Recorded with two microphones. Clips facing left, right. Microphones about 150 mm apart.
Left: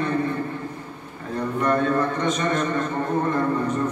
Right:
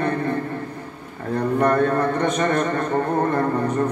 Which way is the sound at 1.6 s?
50° right (ahead or behind).